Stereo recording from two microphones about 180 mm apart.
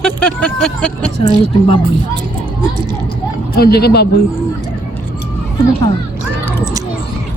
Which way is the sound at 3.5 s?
60° left (ahead or behind).